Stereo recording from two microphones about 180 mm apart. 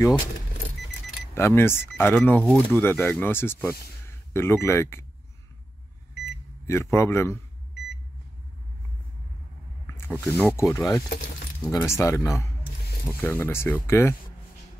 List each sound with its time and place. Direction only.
1.3 s speech: 15° left (ahead or behind)
6.7 s speech: 15° left (ahead or behind)
9.8 s a sound: 15° left (ahead or behind)
10.2 s speech: 15° left (ahead or behind)